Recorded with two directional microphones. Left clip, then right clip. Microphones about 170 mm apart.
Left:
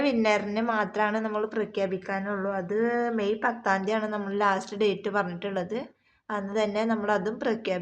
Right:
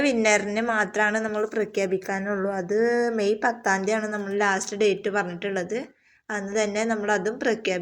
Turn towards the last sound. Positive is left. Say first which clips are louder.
# right 3 dB
turn(degrees=-10)  # may be behind; listen again after turning